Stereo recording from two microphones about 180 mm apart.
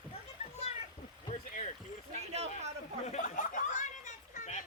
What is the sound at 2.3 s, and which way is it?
Speech, 35° right (ahead or behind).